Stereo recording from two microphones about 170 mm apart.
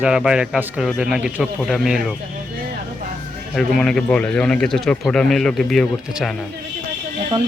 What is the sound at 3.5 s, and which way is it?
Speech, 5° left (ahead or behind).